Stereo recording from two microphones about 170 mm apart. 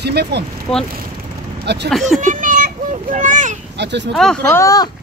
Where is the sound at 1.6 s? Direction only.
80° right.